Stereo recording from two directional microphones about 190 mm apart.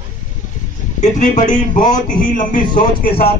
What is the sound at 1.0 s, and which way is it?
A man's voice, 40° left (ahead or behind).